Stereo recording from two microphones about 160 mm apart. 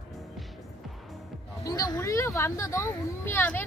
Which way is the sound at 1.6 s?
20° left (ahead or behind).